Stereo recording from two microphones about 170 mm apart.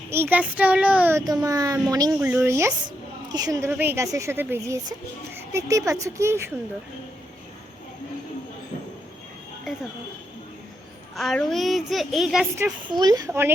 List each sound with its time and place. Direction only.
0.1 s a woman's voice: 10° right (ahead or behind)
1.2 s a woman's voice: 20° right (ahead or behind)
11.2 s a child's voice: centre (ahead or behind)
12.9 s speech: 25° right (ahead or behind)